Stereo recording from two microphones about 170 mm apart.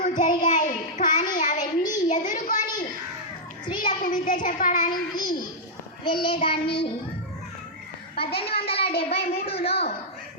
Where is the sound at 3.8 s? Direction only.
50° left (ahead or behind).